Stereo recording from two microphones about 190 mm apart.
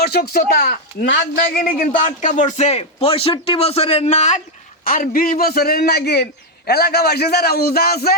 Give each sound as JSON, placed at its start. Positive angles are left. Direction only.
{"t": 0.0, "sound": "a man's voice", "side_deg": 55}
{"t": 1.4, "sound": "a man's voice", "side_deg": 50}
{"t": 4.8, "sound": "a man's voice", "side_deg": 50}